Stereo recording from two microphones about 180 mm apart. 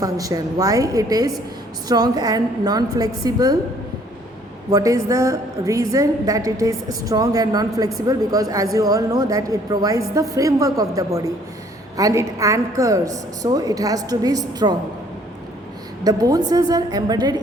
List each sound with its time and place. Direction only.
0.0 s a woman's voice: 20° right (ahead or behind)
4.7 s a woman's voice: 20° right (ahead or behind)
16.0 s a woman's voice: 20° right (ahead or behind)